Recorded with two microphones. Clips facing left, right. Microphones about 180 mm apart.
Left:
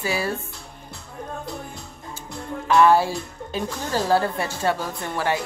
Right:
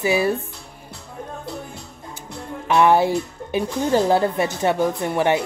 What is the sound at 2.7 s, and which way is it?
Speech, 20° right (ahead or behind).